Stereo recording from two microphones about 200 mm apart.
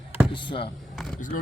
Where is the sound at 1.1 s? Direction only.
40° left (ahead or behind).